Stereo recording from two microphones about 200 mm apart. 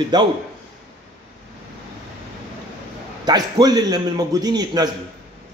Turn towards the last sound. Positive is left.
turn(degrees=-20)  # may be behind; listen again after turning